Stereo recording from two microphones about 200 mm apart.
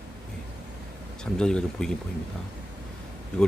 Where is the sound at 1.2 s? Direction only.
5° left (ahead or behind).